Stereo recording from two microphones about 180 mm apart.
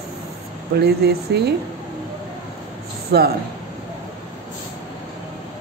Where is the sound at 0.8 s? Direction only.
65° right (ahead or behind).